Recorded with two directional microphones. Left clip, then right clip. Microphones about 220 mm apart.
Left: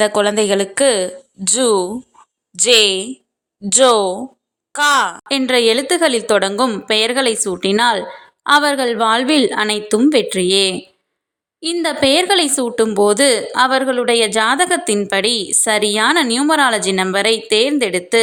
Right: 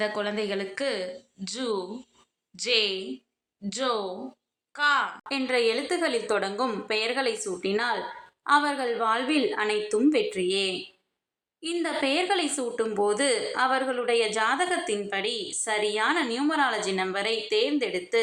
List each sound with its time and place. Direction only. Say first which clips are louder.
0.0 s speech: left 14 dB; 50° left (ahead or behind)